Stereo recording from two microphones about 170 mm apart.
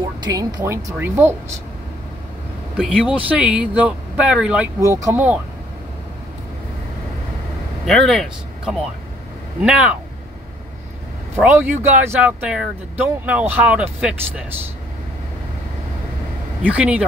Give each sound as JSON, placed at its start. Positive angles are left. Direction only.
{"t": 0.2, "sound": "speech", "side_deg": -20}
{"t": 2.8, "sound": "speech", "side_deg": -5}
{"t": 4.7, "sound": "speech", "side_deg": -20}
{"t": 7.8, "sound": "speech", "side_deg": 0}
{"t": 11.3, "sound": "speech", "side_deg": -10}
{"t": 16.6, "sound": "speech", "side_deg": -5}